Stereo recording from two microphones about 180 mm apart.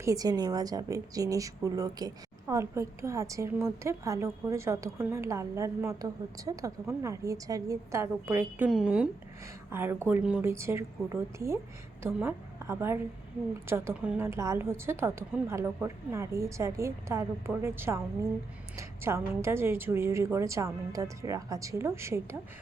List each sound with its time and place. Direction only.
0.0 s a woman's voice: 20° right (ahead or behind)